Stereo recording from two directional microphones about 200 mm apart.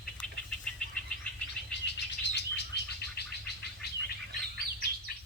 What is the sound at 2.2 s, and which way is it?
Bird, 60° left (ahead or behind).